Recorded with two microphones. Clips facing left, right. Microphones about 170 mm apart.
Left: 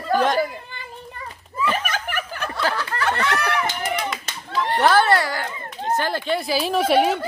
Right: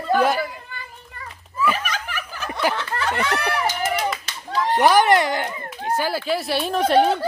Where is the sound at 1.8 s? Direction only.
55° left (ahead or behind).